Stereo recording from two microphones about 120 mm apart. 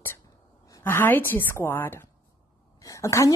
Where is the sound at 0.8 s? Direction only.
15° left (ahead or behind).